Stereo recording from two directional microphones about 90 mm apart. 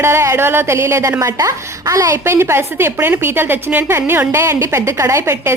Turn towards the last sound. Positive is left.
turn(degrees=-30)  # may be behind; listen again after turning